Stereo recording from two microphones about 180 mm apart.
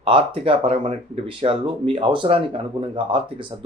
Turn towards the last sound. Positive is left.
turn(degrees=-30)  # may be behind; listen again after turning